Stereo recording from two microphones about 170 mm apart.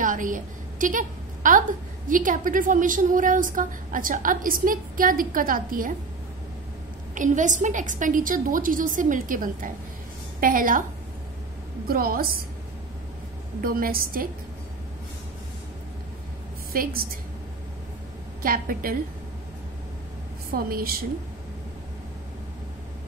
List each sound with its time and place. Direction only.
0.0 s a sound: 50° right (ahead or behind)
2.0 s a woman's voice: 50° right (ahead or behind)
7.2 s a woman's voice: 45° right (ahead or behind)
11.9 s a woman's voice: 60° right (ahead or behind)
13.6 s a woman's voice: 60° right (ahead or behind)
16.7 s a woman's voice: 60° right (ahead or behind)
18.4 s a woman's voice: 55° right (ahead or behind)
20.5 s a woman's voice: 60° right (ahead or behind)